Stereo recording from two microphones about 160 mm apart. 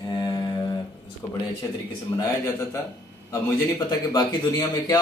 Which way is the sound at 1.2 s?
15° left (ahead or behind).